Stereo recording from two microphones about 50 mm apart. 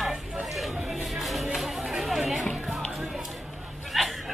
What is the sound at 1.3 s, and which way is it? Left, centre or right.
Music, centre.